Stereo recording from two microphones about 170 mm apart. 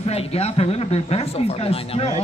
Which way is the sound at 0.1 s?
35° left (ahead or behind).